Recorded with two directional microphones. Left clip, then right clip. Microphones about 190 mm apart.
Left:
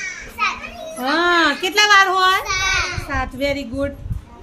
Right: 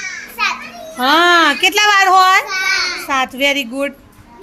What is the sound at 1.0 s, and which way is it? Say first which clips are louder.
A woman's voice: right 6 dB; 10° right (ahead or behind).